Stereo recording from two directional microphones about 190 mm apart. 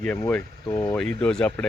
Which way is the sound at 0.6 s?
20° left (ahead or behind).